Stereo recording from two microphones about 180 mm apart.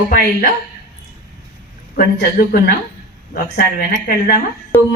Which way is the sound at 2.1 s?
60° left (ahead or behind).